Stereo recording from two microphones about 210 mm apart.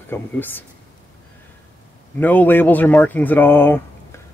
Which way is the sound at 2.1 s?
10° left (ahead or behind).